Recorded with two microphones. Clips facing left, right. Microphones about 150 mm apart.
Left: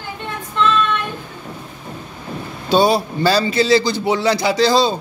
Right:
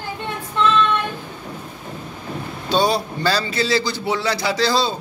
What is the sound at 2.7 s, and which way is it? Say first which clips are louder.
A man's voice: left 4 dB; 10° left (ahead or behind).